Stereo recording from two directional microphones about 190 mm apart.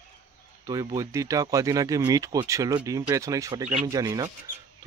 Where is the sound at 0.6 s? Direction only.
20° right (ahead or behind).